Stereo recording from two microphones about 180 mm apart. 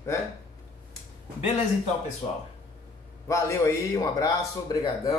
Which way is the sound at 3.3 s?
15° left (ahead or behind).